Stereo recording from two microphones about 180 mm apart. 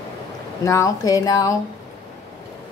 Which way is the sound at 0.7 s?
20° left (ahead or behind).